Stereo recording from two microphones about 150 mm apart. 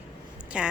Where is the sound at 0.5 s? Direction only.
5° right (ahead or behind).